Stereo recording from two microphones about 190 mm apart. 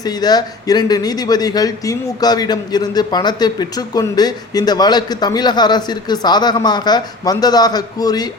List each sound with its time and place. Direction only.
0.0 s a man's voice: 20° left (ahead or behind)